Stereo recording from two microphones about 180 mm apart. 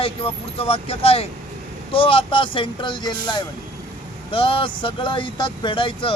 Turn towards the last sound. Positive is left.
turn(degrees=30)  # may be behind; listen again after turning